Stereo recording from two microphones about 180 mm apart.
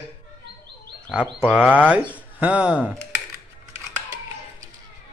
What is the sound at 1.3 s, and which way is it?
Speech, 5° right (ahead or behind).